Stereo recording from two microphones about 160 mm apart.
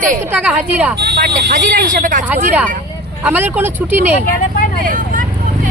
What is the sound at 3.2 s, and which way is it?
Speech, 10° right (ahead or behind).